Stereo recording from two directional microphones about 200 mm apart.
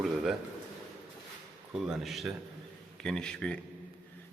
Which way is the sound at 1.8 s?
Centre (ahead or behind).